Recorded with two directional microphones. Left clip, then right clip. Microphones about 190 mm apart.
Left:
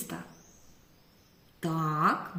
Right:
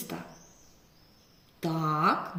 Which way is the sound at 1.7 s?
15° left (ahead or behind).